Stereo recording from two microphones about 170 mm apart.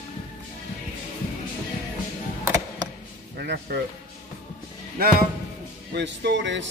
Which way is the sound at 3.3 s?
70° right (ahead or behind).